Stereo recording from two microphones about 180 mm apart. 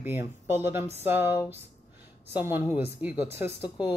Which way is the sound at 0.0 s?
10° right (ahead or behind).